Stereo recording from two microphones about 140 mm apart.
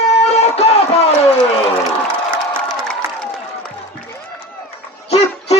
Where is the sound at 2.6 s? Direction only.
5° left (ahead or behind).